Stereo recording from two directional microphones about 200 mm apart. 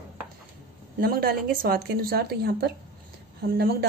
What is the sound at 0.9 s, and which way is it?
A woman's voice, 50° right (ahead or behind).